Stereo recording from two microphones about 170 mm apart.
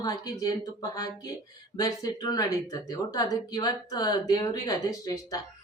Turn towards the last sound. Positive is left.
turn(degrees=20)  # may be behind; listen again after turning